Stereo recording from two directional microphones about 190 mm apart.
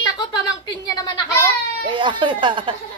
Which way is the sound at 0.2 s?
20° left (ahead or behind).